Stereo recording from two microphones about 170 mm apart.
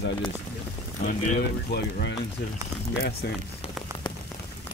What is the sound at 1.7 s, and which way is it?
Speech, 75° left (ahead or behind).